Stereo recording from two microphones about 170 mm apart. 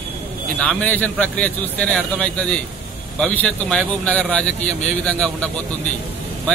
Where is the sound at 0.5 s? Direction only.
10° left (ahead or behind).